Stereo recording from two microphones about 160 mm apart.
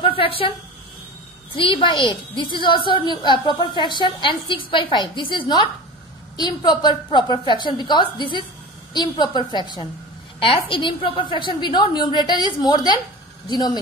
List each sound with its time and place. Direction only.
0.0 s a woman's voice: 35° left (ahead or behind)
1.5 s a woman's voice: 30° left (ahead or behind)